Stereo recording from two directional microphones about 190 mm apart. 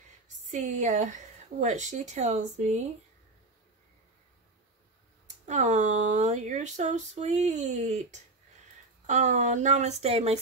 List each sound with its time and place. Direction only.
0.5 s speech: 40° right (ahead or behind)
5.5 s speech: 40° right (ahead or behind)